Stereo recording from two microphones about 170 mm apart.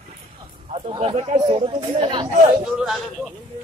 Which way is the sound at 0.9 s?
35° right (ahead or behind).